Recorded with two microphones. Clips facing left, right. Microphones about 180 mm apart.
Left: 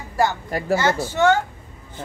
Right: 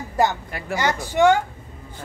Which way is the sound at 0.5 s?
40° left (ahead or behind).